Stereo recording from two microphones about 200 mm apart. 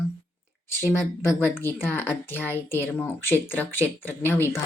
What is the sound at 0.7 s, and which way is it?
Speech, 15° left (ahead or behind).